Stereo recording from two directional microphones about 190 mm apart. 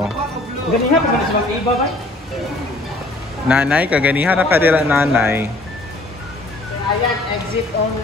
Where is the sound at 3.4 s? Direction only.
10° right (ahead or behind).